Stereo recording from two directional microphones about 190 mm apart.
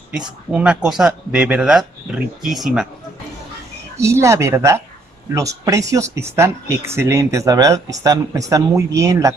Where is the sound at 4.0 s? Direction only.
15° right (ahead or behind).